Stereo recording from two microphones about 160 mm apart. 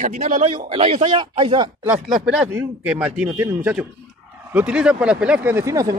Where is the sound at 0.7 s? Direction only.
40° right (ahead or behind).